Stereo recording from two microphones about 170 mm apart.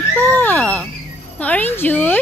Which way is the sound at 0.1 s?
10° left (ahead or behind).